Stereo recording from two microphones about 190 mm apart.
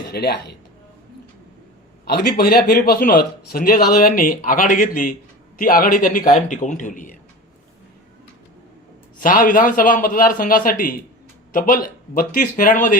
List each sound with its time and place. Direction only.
0.1 s speech: 55° left (ahead or behind)
2.4 s speech: 50° left (ahead or behind)
9.1 s speech: 45° left (ahead or behind)